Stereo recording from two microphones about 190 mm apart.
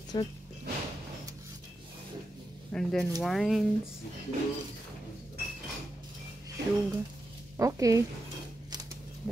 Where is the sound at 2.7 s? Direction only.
5° left (ahead or behind).